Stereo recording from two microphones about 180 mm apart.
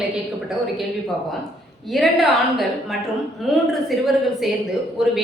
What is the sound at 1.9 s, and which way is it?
A woman's voice, centre (ahead or behind).